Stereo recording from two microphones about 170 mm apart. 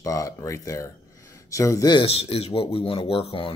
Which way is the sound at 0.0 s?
20° left (ahead or behind).